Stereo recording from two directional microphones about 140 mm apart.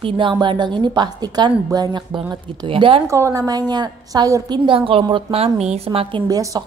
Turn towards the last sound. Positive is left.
turn(degrees=-25)  # may be behind; listen again after turning